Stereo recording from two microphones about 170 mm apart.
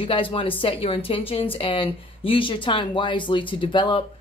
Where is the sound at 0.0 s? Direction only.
30° left (ahead or behind).